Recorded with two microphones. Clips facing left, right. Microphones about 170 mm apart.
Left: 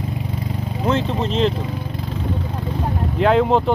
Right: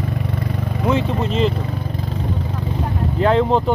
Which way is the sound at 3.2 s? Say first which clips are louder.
Left 1 dB; centre (ahead or behind).